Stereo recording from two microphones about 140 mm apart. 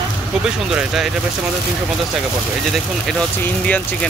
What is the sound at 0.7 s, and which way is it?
Speech, 5° right (ahead or behind).